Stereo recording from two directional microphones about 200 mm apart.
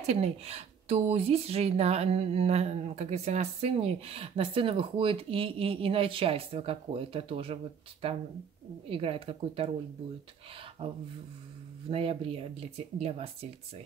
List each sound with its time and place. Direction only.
0.0 s speech: 30° right (ahead or behind)
8.8 s speech: 30° right (ahead or behind)
10.8 s speech: 30° right (ahead or behind)